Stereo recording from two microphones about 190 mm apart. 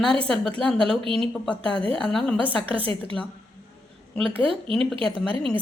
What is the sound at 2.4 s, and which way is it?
Speech, 30° right (ahead or behind).